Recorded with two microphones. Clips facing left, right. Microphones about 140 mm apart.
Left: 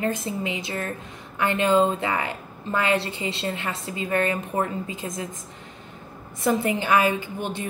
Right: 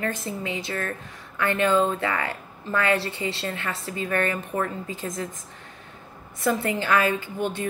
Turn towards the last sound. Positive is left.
turn(degrees=20)  # may be behind; listen again after turning